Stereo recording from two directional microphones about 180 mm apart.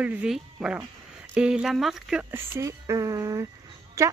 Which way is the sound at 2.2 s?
15° right (ahead or behind).